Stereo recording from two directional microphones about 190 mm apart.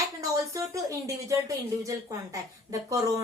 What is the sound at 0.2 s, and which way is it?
Speech, 15° right (ahead or behind).